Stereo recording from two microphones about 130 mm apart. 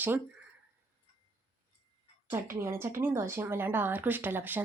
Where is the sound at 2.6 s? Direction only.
20° right (ahead or behind).